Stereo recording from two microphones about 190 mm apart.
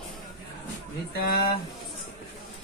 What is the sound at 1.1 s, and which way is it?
Speech, 50° left (ahead or behind).